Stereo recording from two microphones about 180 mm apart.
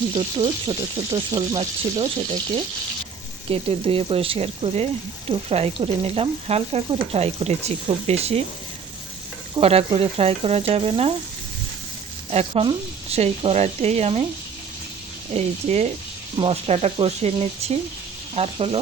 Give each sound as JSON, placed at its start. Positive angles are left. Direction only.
{"t": 0.1, "sound": "speech", "side_deg": -25}
{"t": 3.5, "sound": "frying", "side_deg": -30}
{"t": 9.6, "sound": "frying", "side_deg": -35}
{"t": 12.3, "sound": "frying", "side_deg": -35}
{"t": 15.3, "sound": "frying", "side_deg": -40}